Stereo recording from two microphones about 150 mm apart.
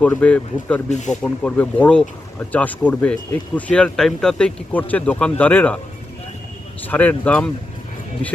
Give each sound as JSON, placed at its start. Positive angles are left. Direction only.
{"t": 0.0, "sound": "speech", "side_deg": 10}
{"t": 0.9, "sound": "speech", "side_deg": 50}
{"t": 1.2, "sound": "speech", "side_deg": 10}
{"t": 6.8, "sound": "speech", "side_deg": 10}